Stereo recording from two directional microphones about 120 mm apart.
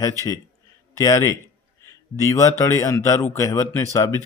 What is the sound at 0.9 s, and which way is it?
Speech, 25° left (ahead or behind).